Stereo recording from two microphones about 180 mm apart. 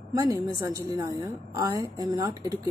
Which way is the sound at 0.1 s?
20° right (ahead or behind).